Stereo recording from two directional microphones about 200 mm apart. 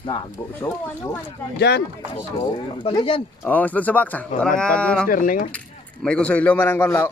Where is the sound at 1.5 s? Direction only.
55° left (ahead or behind).